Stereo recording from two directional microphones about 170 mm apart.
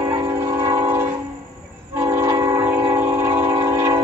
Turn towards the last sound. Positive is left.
turn(degrees=-15)  # may be behind; listen again after turning